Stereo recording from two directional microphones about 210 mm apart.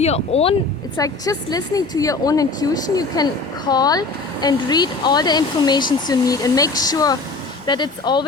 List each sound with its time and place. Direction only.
0.0 s speech: 30° left (ahead or behind)
0.9 s speech: 15° left (ahead or behind)